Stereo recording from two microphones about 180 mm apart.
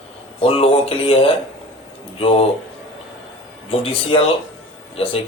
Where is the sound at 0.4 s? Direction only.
30° left (ahead or behind).